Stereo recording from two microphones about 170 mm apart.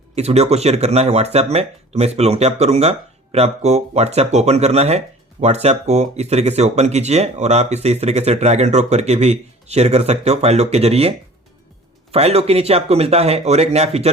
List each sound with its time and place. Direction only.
0.2 s speech: 40° right (ahead or behind)
12.1 s speech: 35° right (ahead or behind)